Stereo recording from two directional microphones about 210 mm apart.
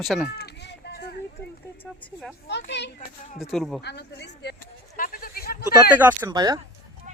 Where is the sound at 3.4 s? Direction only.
Centre (ahead or behind).